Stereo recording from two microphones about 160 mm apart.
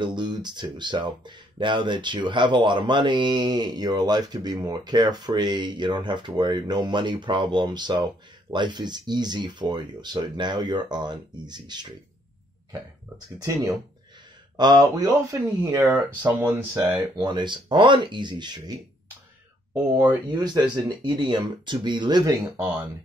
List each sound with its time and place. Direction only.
0.0 s speech: 30° right (ahead or behind)
13.4 s speech: 20° right (ahead or behind)
15.9 s speech: 10° right (ahead or behind)
17.2 s speech: 30° right (ahead or behind)
19.7 s speech: 10° right (ahead or behind)
20.2 s speech: 25° right (ahead or behind)